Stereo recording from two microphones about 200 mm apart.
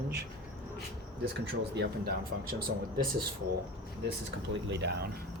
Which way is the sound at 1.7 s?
55° right (ahead or behind).